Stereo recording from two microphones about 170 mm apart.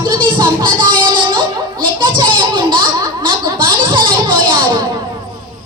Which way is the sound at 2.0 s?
30° right (ahead or behind).